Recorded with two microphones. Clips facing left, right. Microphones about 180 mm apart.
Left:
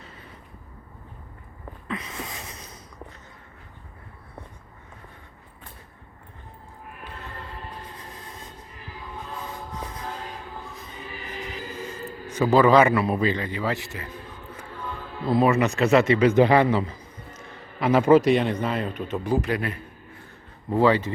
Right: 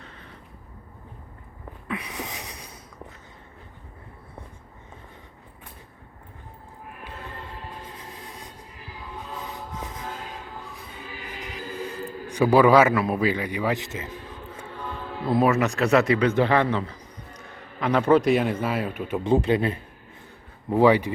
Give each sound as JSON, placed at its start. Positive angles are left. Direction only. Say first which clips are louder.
{"t": 1.9, "sound": "a sound", "louder": "right 1 dB", "side_deg": -15}
{"t": 8.2, "sound": "music", "louder": "right 1 dB", "side_deg": -15}
{"t": 12.3, "sound": "a man's voice", "louder": "right 1 dB", "side_deg": -15}
{"t": 15.3, "sound": "speech", "louder": "left 1 dB", "side_deg": 0}
{"t": 19.2, "sound": "speech", "louder": "right 5 dB", "side_deg": -25}
{"t": 20.7, "sound": "a man's voice", "louder": "right 2 dB", "side_deg": -15}